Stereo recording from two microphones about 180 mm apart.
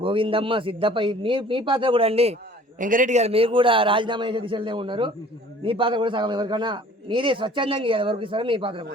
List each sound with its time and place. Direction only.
0.0 s a man's voice: 30° right (ahead or behind)
2.7 s a man's voice: 45° right (ahead or behind); by 8.8 s 30° right (ahead or behind)